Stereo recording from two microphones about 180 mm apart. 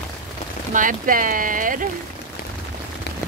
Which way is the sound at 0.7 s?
50° right (ahead or behind).